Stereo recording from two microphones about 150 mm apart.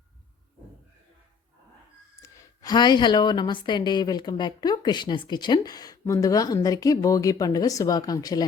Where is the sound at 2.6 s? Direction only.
30° left (ahead or behind).